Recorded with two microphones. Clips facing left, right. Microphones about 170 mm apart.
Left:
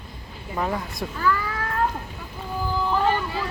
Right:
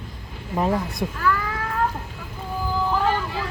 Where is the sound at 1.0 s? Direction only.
15° right (ahead or behind).